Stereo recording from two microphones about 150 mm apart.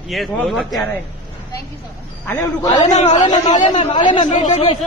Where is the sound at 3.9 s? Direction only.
30° left (ahead or behind).